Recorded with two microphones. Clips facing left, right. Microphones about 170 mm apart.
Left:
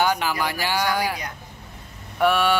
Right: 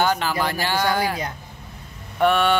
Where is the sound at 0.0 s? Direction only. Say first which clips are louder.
Right 1 dB; 10° left (ahead or behind).